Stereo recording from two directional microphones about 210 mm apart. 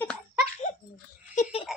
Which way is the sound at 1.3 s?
30° left (ahead or behind).